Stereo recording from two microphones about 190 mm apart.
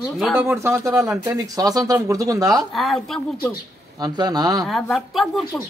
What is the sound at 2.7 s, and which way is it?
Speech, centre (ahead or behind).